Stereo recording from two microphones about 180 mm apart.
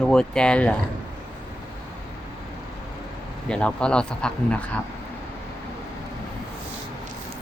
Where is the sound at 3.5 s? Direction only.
5° left (ahead or behind).